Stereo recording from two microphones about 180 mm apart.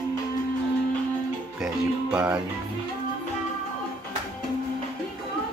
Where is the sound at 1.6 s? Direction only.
5° right (ahead or behind).